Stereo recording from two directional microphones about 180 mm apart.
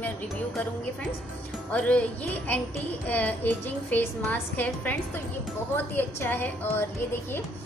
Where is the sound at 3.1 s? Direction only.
10° left (ahead or behind).